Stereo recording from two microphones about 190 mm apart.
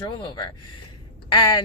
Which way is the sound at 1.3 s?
25° left (ahead or behind).